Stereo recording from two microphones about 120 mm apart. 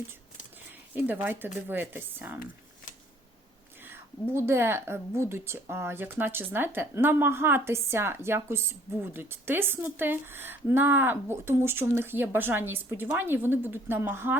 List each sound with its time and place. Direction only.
0.7 s speech: 15° right (ahead or behind)
3.8 s a woman's voice: 20° right (ahead or behind)